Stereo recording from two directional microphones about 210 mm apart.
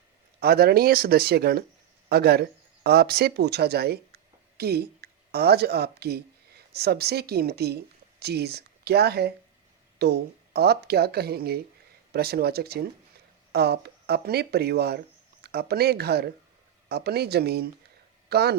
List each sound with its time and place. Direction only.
0.3 s speech: 50° right (ahead or behind)